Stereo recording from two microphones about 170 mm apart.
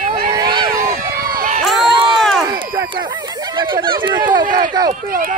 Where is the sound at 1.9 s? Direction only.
30° right (ahead or behind).